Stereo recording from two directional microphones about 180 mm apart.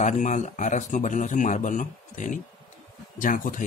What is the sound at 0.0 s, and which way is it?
Speech, 40° left (ahead or behind).